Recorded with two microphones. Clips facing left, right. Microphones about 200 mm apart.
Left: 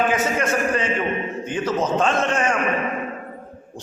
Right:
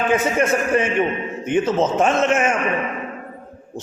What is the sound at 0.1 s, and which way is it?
A man's voice, 25° right (ahead or behind).